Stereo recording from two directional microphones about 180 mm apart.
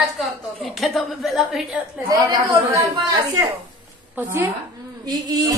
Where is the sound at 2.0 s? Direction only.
20° right (ahead or behind).